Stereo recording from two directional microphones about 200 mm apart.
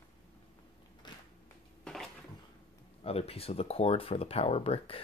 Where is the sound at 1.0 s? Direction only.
20° left (ahead or behind).